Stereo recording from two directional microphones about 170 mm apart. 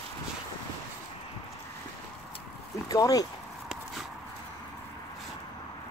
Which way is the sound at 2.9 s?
20° left (ahead or behind).